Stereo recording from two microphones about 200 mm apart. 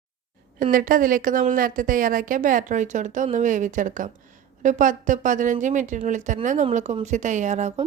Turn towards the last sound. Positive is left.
turn(degrees=-35)  # may be behind; listen again after turning